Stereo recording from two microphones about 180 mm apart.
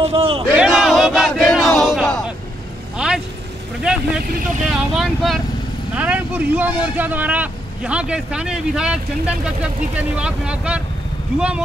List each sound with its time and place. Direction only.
0.0 s a man's voice: 30° right (ahead or behind)
0.5 s a sound: 5° right (ahead or behind)
3.8 s speech: 5° right (ahead or behind)